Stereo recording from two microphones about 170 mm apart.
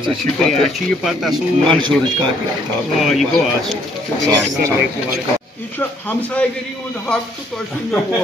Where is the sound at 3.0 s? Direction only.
Centre (ahead or behind).